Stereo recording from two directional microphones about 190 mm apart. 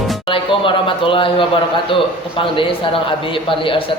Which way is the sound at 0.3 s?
25° left (ahead or behind).